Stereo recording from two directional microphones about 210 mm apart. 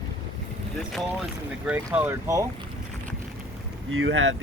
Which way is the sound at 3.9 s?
70° right (ahead or behind).